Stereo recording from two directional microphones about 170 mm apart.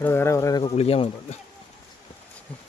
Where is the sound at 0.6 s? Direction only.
35° left (ahead or behind).